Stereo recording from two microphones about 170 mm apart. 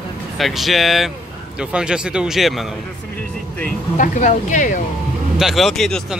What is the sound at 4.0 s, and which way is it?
Speech, 50° left (ahead or behind).